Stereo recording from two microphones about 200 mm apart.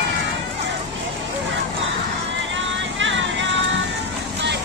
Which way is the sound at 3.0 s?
65° right (ahead or behind).